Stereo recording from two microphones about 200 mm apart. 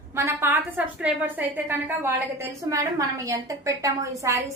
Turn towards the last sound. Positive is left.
turn(degrees=-15)  # may be behind; listen again after turning